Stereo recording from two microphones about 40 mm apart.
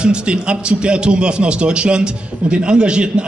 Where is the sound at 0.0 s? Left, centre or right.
Right.